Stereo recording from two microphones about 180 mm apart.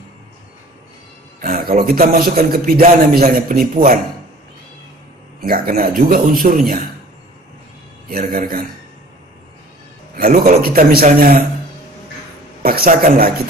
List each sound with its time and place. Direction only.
1.4 s a man's voice: 50° right (ahead or behind)
5.4 s a man's voice: 55° right (ahead or behind)
8.1 s a man's voice: 55° right (ahead or behind)
10.1 s a man's voice: 55° right (ahead or behind)
12.6 s speech: 55° right (ahead or behind)